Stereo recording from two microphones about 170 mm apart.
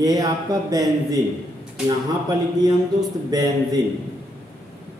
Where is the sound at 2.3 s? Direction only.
20° right (ahead or behind).